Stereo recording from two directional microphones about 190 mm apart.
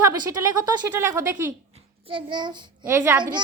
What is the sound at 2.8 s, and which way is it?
Speech, 10° right (ahead or behind).